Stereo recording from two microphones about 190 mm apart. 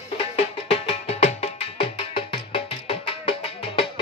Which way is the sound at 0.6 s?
30° left (ahead or behind).